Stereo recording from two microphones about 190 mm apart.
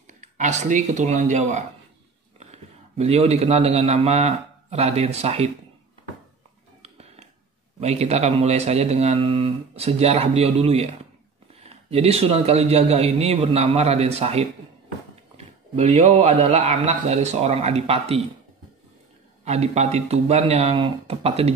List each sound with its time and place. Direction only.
0.0 s a man's voice: 40° right (ahead or behind)
6.8 s mechanisms: 35° right (ahead or behind)
7.8 s speech: 35° right (ahead or behind)
15.7 s speech: 35° right (ahead or behind)
19.4 s speech: 35° right (ahead or behind)